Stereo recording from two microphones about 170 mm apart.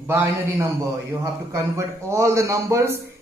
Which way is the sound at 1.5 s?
15° right (ahead or behind).